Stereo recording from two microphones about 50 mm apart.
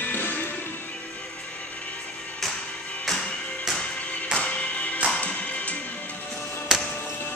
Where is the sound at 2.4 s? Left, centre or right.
Centre.